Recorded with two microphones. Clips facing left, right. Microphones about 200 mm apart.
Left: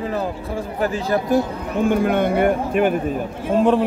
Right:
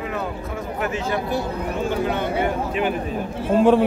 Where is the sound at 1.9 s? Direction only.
55° left (ahead or behind).